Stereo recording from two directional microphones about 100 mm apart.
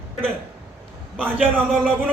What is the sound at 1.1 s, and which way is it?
Speech, 15° right (ahead or behind).